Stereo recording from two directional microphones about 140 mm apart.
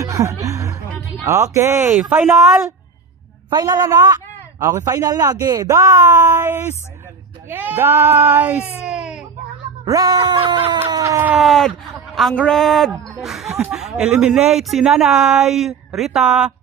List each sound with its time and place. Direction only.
0.0 s chuckle: 20° right (ahead or behind)
1.2 s speech: 20° right (ahead or behind)
2.0 s speech: centre (ahead or behind)
3.4 s speech: 25° right (ahead or behind); by 8.6 s 10° right (ahead or behind)
8.8 s baby cry: 5° right (ahead or behind)
9.8 s speech: 25° right (ahead or behind)
11.3 s speech: centre (ahead or behind)